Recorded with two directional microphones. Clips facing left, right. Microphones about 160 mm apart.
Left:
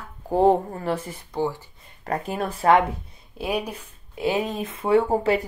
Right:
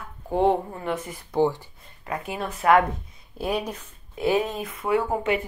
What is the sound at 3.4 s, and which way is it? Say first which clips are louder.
Speech: even; 10° left (ahead or behind).